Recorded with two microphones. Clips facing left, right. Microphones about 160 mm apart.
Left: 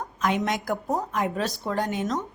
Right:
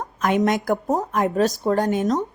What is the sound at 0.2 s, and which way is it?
A woman's voice, 50° right (ahead or behind).